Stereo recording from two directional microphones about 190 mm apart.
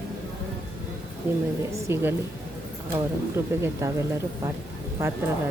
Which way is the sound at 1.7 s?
10° right (ahead or behind).